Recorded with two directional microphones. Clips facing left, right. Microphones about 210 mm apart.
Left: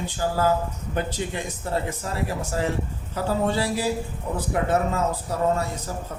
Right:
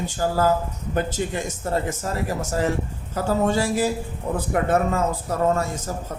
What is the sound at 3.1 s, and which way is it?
Speech, 45° right (ahead or behind).